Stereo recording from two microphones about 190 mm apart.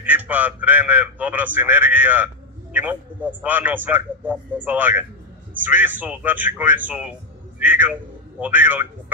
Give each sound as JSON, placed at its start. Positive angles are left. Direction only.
{"t": 0.0, "sound": "a man's voice", "side_deg": -10}